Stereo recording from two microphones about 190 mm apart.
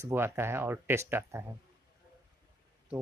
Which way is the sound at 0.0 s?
15° right (ahead or behind).